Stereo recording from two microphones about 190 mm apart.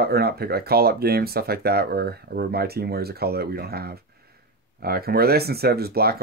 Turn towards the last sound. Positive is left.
turn(degrees=-55)  # may be behind; listen again after turning